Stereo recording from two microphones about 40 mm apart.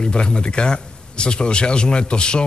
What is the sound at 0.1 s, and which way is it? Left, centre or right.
A man's voice, left.